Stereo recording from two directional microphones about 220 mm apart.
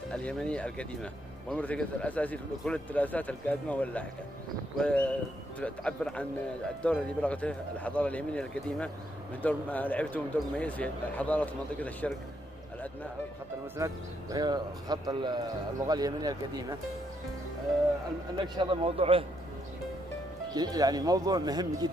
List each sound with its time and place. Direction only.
0.1 s speech: 5° left (ahead or behind)
13.7 s speech: 15° right (ahead or behind)
18.4 s speech: 20° right (ahead or behind)
20.5 s speech: 15° right (ahead or behind)